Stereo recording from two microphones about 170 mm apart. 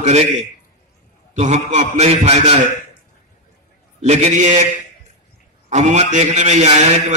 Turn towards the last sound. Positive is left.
turn(degrees=-45)  # may be behind; listen again after turning